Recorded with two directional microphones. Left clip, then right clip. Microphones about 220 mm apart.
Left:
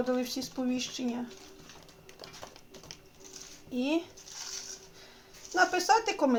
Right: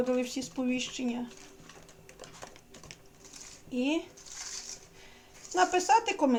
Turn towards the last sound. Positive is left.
turn(degrees=15)  # may be behind; listen again after turning